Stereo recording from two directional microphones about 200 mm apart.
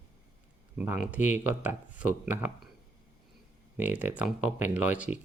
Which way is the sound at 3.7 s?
10° right (ahead or behind).